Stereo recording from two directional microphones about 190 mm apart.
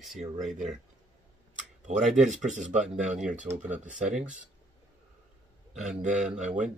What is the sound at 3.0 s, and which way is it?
Speech, 5° right (ahead or behind).